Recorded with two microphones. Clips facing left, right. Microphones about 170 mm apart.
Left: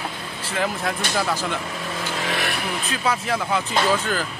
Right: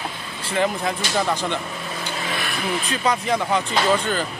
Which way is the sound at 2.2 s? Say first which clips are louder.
Left 4 dB; 90° left.